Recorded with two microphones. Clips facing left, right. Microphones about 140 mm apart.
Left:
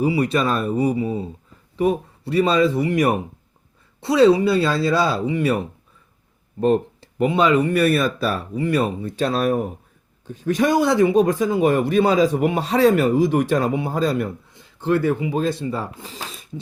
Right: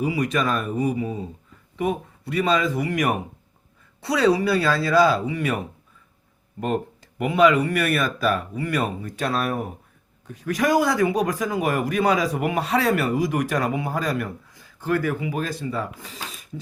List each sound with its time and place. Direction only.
0.0 s speech: 30° left (ahead or behind)
6.6 s speech: 30° left (ahead or behind)